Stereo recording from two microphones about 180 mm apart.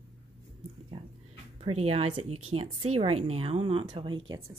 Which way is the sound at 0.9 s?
30° right (ahead or behind).